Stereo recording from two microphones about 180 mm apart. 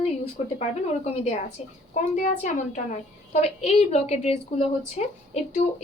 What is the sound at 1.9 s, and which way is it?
A woman's voice, 45° left (ahead or behind).